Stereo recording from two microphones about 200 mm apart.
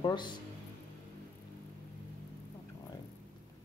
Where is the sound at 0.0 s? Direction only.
20° left (ahead or behind).